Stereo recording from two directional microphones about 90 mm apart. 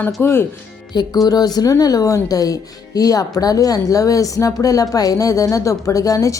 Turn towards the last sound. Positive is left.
turn(degrees=40)  # may be behind; listen again after turning